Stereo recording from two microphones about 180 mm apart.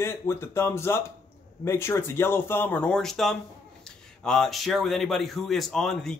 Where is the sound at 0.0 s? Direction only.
15° left (ahead or behind).